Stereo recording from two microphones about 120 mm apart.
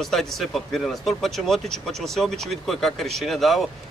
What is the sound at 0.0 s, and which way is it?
Speech, centre (ahead or behind).